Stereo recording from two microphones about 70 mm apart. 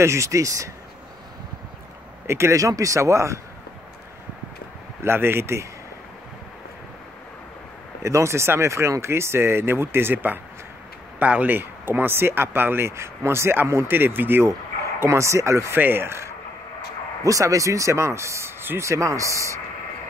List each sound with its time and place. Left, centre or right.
0.0 s speech: right
2.2 s speech: right
5.0 s speech: right
8.0 s speech: right
15.0 s speech: right
15.7 s speech: right
17.2 s speech: right
18.9 s speech: right